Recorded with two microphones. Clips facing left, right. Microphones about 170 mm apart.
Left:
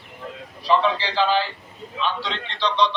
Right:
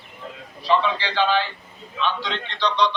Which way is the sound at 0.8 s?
35° left (ahead or behind).